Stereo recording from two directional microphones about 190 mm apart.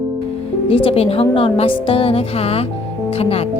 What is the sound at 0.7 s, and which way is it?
A woman's voice, 30° left (ahead or behind).